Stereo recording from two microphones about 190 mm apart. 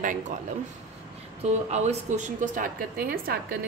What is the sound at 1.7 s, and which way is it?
A woman's voice, 40° right (ahead or behind).